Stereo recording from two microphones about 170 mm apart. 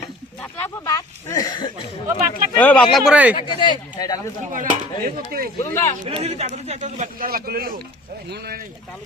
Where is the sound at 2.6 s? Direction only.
10° left (ahead or behind).